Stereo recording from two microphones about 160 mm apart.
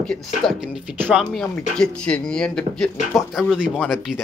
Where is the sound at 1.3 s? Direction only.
5° left (ahead or behind).